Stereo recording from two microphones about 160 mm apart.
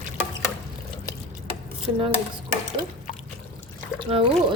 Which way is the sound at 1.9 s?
30° right (ahead or behind).